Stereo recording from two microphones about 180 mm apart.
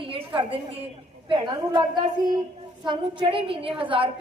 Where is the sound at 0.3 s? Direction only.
30° right (ahead or behind).